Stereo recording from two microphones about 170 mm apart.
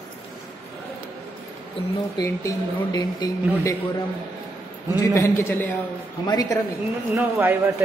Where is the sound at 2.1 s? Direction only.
20° left (ahead or behind).